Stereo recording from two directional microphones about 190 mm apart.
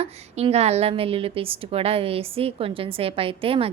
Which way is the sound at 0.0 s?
35° right (ahead or behind).